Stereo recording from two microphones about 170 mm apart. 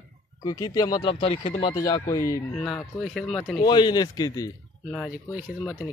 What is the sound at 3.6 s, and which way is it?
Speech, 25° left (ahead or behind).